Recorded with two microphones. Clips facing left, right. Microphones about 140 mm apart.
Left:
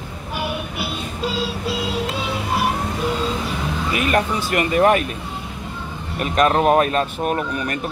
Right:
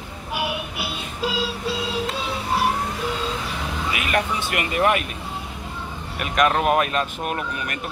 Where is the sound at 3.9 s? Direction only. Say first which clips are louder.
Left 4 dB; 40° left (ahead or behind).